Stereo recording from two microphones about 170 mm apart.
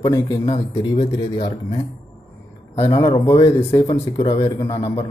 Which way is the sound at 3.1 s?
25° left (ahead or behind).